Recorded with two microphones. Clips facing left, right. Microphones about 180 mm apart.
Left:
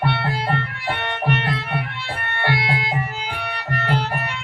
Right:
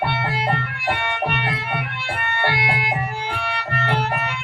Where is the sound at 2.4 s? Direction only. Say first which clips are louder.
Left 1 dB; 25° right (ahead or behind).